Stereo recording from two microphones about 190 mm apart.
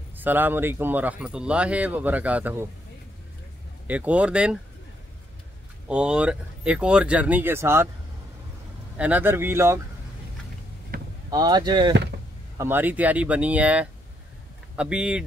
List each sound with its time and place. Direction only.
0.2 s speech: 10° right (ahead or behind)
3.8 s speech: 10° right (ahead or behind)
5.9 s speech: 5° right (ahead or behind)
8.9 s speech: 5° right (ahead or behind)
10.9 s vehicle: 50° right (ahead or behind)
11.2 s speech: 20° right (ahead or behind)
12.5 s speech: 10° right (ahead or behind)